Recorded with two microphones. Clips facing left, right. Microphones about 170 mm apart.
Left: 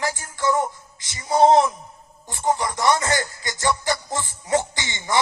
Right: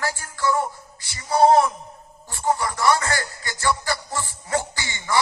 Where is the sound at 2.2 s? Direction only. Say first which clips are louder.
Left 1 dB; 20° left (ahead or behind).